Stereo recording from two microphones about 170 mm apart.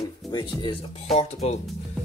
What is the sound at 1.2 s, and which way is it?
Speech, 40° left (ahead or behind).